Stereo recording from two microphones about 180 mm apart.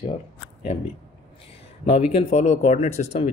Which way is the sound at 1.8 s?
35° left (ahead or behind).